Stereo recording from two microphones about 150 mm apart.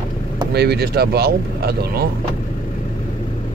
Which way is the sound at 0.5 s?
90° right.